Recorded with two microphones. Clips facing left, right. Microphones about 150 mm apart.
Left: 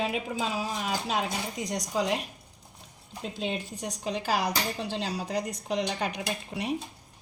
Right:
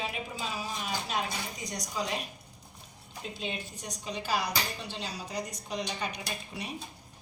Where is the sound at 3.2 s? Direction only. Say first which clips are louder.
Left 5 dB; 90° left.